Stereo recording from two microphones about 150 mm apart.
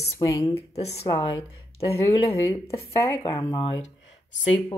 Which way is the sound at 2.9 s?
20° left (ahead or behind).